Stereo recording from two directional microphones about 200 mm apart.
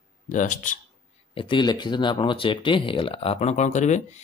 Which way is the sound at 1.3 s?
25° left (ahead or behind).